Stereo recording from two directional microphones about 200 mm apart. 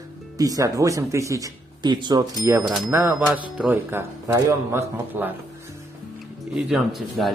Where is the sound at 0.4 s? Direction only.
15° right (ahead or behind).